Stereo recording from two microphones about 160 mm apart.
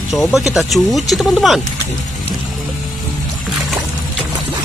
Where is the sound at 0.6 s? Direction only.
Centre (ahead or behind).